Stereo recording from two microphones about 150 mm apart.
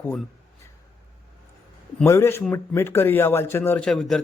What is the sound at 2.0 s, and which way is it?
Speech, 15° left (ahead or behind).